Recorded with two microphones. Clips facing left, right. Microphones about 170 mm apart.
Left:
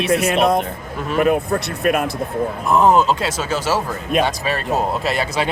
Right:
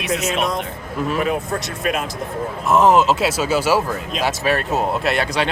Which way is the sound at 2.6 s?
Centre (ahead or behind).